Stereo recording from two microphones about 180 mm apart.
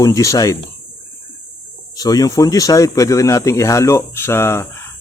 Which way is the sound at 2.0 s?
20° left (ahead or behind).